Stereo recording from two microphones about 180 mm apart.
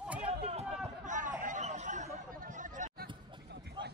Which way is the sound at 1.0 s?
45° right (ahead or behind).